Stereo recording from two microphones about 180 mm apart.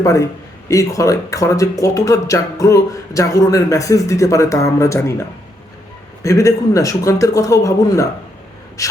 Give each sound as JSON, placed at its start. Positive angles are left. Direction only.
{"t": 0.0, "sound": "speech", "side_deg": 20}
{"t": 6.2, "sound": "speech", "side_deg": 15}